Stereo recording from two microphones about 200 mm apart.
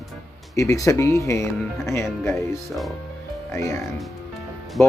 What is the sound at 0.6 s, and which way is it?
Speech, 15° left (ahead or behind).